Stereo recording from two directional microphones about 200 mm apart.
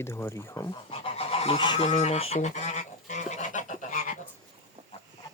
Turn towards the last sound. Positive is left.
turn(degrees=40)  # may be behind; listen again after turning